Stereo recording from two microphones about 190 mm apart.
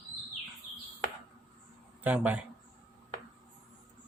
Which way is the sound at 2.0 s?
10° right (ahead or behind).